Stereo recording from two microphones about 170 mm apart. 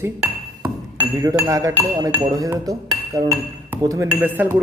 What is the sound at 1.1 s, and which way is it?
A man's voice, 20° right (ahead or behind).